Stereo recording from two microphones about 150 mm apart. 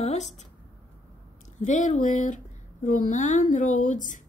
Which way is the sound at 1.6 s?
55° left (ahead or behind).